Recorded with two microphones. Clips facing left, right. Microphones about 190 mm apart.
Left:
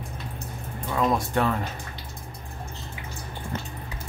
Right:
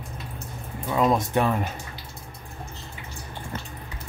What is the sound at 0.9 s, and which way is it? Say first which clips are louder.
Speech: right 2 dB; 20° right (ahead or behind).